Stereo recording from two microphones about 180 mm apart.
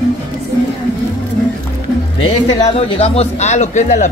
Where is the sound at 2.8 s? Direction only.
30° left (ahead or behind).